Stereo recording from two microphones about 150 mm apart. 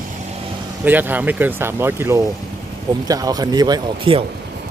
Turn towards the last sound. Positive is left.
turn(degrees=-35)  # may be behind; listen again after turning